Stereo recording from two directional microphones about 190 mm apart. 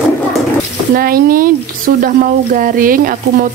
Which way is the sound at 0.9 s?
50° right (ahead or behind).